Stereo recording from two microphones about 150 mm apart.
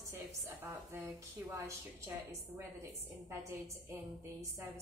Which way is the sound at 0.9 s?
20° right (ahead or behind).